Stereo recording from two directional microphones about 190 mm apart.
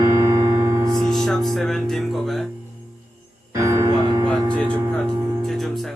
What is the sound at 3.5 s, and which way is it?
Music, 15° right (ahead or behind).